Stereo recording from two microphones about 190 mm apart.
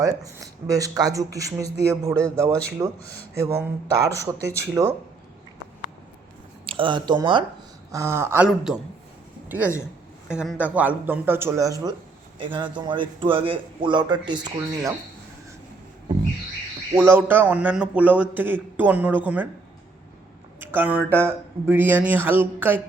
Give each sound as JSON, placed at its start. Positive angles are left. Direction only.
{"t": 0.0, "sound": "a man's voice", "side_deg": -20}
{"t": 6.7, "sound": "a man's voice", "side_deg": -25}
{"t": 10.2, "sound": "a man's voice", "side_deg": -5}
{"t": 16.9, "sound": "a man's voice", "side_deg": -10}
{"t": 20.6, "sound": "a man's voice", "side_deg": -10}